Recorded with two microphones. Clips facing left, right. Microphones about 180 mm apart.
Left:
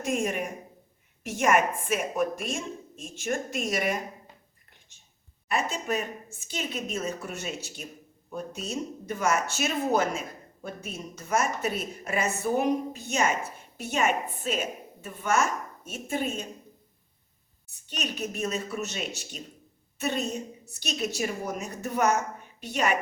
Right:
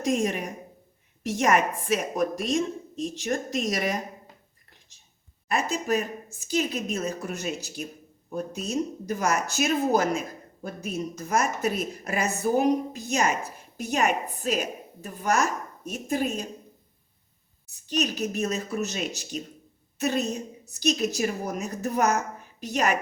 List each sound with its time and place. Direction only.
0.0 s speech: 35° right (ahead or behind)
5.5 s speech: 40° right (ahead or behind)
18.0 s a woman's voice: 40° right (ahead or behind)